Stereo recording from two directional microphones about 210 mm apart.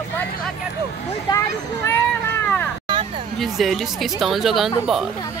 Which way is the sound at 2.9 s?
25° right (ahead or behind).